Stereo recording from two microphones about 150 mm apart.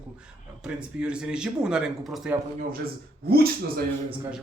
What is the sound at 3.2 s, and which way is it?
Speech, 90° right.